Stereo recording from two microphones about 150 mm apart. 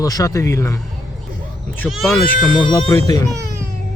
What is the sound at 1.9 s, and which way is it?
Speech, centre (ahead or behind).